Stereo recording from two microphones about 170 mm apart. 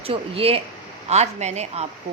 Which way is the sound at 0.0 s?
35° right (ahead or behind).